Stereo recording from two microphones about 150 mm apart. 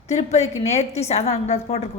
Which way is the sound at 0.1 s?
45° left (ahead or behind).